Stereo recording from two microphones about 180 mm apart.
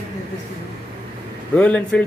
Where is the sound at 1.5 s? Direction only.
5° left (ahead or behind).